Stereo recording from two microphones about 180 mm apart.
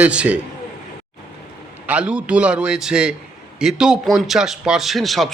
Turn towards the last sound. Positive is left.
turn(degrees=0)  # may be behind; listen again after turning